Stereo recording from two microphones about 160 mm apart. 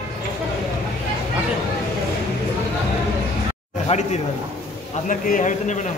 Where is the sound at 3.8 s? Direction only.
45° left (ahead or behind).